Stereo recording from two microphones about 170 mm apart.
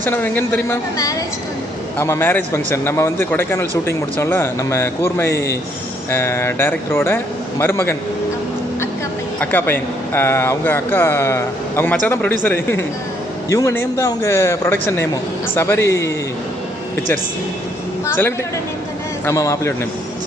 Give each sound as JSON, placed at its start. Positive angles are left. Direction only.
{"t": 0.0, "sound": "speech", "side_deg": 10}
{"t": 9.4, "sound": "speech", "side_deg": 10}
{"t": 18.0, "sound": "a woman's voice", "side_deg": 15}